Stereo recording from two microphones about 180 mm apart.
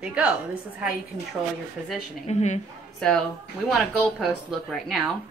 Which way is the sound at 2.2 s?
40° left (ahead or behind).